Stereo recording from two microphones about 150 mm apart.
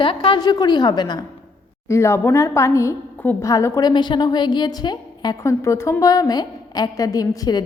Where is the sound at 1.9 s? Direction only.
20° left (ahead or behind).